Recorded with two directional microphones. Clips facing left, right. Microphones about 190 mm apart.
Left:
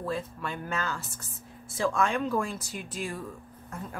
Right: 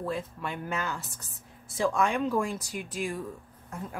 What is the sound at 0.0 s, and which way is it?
Speech, 15° right (ahead or behind).